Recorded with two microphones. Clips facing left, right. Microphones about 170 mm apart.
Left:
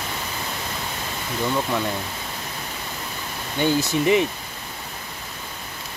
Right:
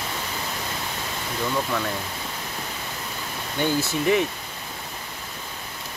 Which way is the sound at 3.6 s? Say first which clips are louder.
Left 3 dB; 20° left (ahead or behind).